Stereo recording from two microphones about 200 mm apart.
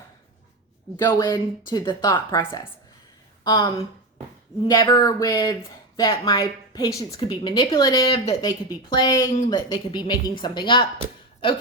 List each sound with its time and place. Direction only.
1.0 s speech: 20° left (ahead or behind)